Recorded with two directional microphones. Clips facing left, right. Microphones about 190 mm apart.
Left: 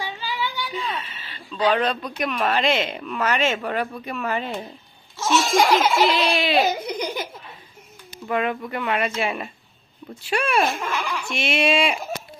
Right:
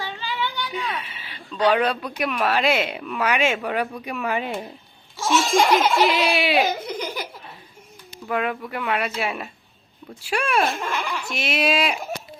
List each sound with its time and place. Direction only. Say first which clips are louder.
0.0 s a sound: even; 10° left (ahead or behind)
0.7 s speech: even; 10° right (ahead or behind)
5.1 s laughter: even; 10° right (ahead or behind)
5.5 s baby laughter: even; centre (ahead or behind)
6.1 s speech: even; 10° right (ahead or behind)
6.7 s giggle: left 2 dB; 15° left (ahead or behind)
8.3 s speech: left 1 dB; centre (ahead or behind)
10.9 s speech: left 1 dB; 10° right (ahead or behind)